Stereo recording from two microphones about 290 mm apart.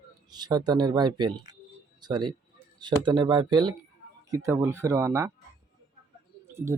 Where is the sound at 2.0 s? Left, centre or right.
Centre.